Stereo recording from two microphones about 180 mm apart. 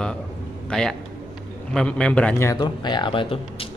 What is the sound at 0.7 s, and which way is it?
A man's voice, 5° left (ahead or behind).